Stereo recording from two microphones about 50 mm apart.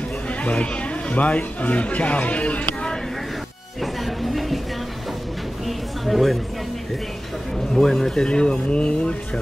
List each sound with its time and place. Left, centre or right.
0.3 s speech: left
3.8 s music: centre
5.7 s music: centre
7.7 s speech: centre